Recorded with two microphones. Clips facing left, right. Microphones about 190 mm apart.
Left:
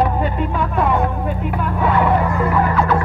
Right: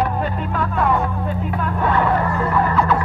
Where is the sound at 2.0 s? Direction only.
10° left (ahead or behind).